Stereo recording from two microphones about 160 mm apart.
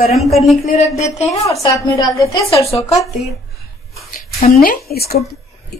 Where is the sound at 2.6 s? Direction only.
40° left (ahead or behind).